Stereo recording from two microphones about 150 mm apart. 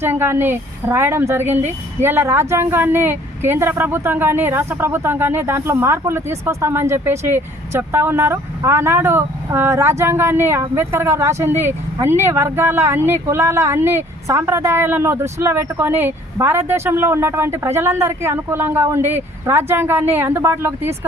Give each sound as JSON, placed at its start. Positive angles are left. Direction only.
{"t": 0.0, "sound": "a woman's voice", "side_deg": -15}